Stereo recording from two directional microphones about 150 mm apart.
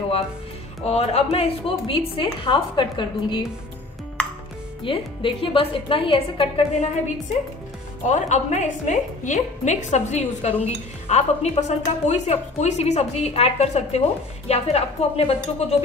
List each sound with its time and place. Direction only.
0.8 s a woman's voice: 40° left (ahead or behind)
4.8 s a woman's voice: 35° left (ahead or behind)
8.1 s a woman's voice: 50° left (ahead or behind)